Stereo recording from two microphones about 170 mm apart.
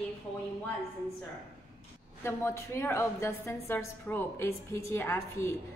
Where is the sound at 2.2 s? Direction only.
15° left (ahead or behind).